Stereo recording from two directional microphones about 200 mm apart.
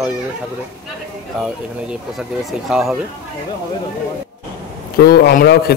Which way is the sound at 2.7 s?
Centre (ahead or behind).